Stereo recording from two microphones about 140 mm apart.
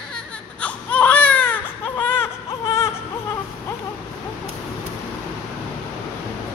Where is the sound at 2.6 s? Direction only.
20° left (ahead or behind).